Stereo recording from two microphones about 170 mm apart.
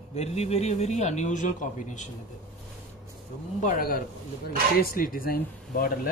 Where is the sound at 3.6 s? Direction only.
55° left (ahead or behind).